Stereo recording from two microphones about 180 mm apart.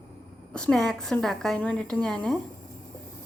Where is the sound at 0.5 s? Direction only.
5° left (ahead or behind).